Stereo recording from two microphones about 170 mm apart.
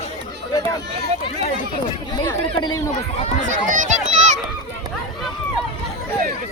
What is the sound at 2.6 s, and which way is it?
Speech, 25° left (ahead or behind).